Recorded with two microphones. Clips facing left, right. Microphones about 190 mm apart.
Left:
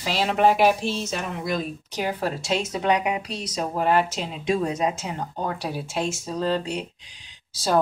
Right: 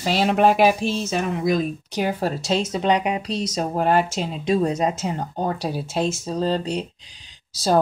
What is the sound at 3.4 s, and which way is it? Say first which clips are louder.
Speech: right 3 dB; 40° right (ahead or behind).